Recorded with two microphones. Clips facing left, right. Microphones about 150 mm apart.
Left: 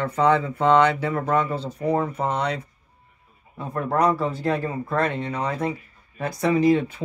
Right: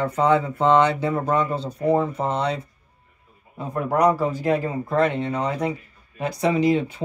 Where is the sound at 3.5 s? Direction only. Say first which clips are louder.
Right 1 dB; 15° right (ahead or behind).